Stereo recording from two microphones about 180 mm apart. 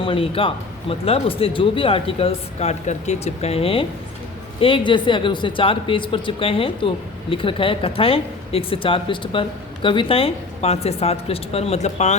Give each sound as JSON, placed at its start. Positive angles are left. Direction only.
{"t": 0.0, "sound": "speech", "side_deg": 30}